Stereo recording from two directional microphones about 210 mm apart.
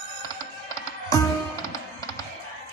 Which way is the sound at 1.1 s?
15° left (ahead or behind).